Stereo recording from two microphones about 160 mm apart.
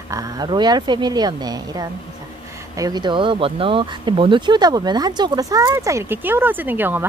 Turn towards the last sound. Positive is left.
turn(degrees=-10)  # may be behind; listen again after turning